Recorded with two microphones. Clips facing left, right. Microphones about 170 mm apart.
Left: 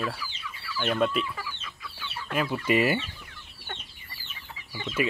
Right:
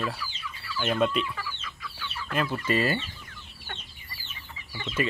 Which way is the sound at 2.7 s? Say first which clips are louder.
Left 3 dB; 15° left (ahead or behind).